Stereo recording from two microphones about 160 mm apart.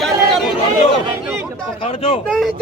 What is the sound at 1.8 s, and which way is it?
Speech, 35° left (ahead or behind).